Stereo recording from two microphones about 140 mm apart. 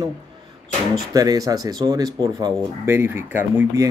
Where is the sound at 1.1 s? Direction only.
25° right (ahead or behind).